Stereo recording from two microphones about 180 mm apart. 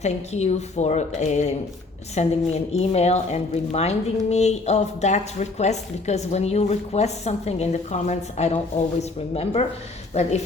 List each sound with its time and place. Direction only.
0.0 s a woman's voice: 40° left (ahead or behind)